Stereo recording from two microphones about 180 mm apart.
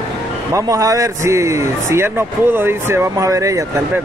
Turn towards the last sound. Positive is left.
turn(degrees=-15)  # may be behind; listen again after turning